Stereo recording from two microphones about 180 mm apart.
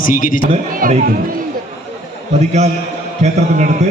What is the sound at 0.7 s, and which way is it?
Speech, 50° right (ahead or behind).